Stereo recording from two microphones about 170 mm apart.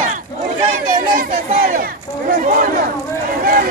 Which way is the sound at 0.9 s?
55° right (ahead or behind).